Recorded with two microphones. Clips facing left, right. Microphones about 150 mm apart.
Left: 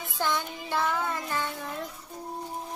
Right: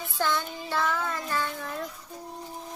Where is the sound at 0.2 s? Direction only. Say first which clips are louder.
Right 1 dB; 15° left (ahead or behind).